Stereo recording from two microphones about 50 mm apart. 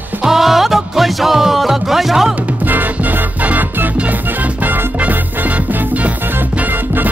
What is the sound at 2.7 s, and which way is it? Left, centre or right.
Music, right.